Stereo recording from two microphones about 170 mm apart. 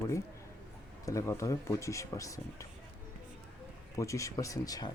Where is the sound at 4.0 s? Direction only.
20° left (ahead or behind).